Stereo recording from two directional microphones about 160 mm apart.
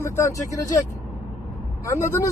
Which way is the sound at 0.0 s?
15° left (ahead or behind).